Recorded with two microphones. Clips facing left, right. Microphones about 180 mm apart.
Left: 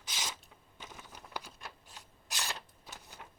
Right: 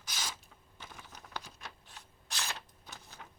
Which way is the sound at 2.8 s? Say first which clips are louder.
Even; 10° left (ahead or behind).